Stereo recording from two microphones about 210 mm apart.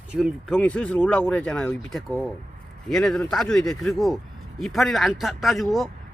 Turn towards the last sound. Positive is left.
turn(degrees=0)  # may be behind; listen again after turning